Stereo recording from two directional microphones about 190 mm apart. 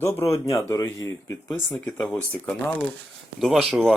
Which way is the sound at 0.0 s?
15° left (ahead or behind).